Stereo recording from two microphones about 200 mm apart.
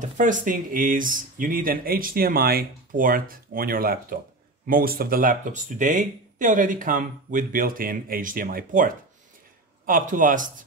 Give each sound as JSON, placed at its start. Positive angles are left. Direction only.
{"t": 0.2, "sound": "speech", "side_deg": -40}